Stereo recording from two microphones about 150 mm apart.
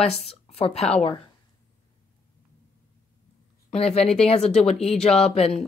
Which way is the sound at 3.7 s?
45° left (ahead or behind).